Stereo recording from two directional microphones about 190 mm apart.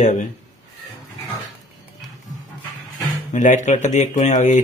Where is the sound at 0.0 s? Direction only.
40° left (ahead or behind).